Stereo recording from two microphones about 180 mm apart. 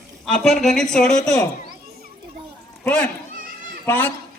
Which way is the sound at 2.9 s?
5° left (ahead or behind).